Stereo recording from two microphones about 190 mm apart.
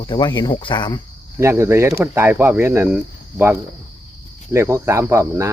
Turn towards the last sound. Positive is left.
turn(degrees=-15)  # may be behind; listen again after turning